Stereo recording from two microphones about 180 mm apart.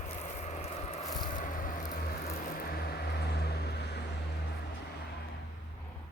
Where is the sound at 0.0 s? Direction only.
40° left (ahead or behind).